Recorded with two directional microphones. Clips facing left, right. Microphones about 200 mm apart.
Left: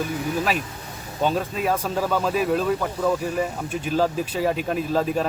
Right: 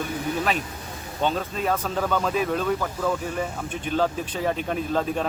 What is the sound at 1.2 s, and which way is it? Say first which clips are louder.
Speech: left 2 dB; 10° left (ahead or behind).